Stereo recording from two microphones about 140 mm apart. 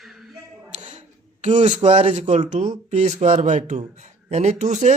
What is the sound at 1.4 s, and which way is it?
Speech, 60° right (ahead or behind).